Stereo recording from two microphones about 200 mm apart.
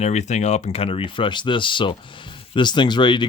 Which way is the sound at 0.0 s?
35° left (ahead or behind).